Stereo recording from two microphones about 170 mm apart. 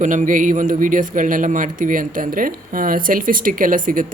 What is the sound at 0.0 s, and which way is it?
A man's voice, 50° right (ahead or behind).